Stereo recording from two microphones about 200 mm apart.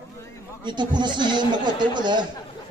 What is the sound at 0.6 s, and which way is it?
A man's voice, 20° right (ahead or behind).